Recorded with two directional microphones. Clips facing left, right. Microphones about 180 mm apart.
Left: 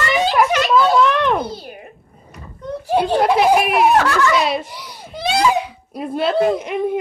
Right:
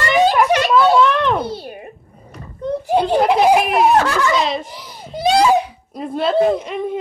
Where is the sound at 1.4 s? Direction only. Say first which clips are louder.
Right 2 dB; 30° right (ahead or behind).